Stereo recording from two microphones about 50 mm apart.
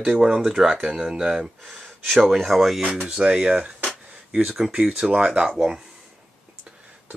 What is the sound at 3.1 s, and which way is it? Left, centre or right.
Speech, centre.